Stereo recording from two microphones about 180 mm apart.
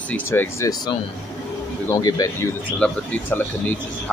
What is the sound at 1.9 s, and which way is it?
Speech, 20° left (ahead or behind).